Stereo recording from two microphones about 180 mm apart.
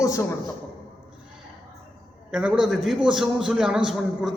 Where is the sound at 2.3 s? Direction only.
5° right (ahead or behind).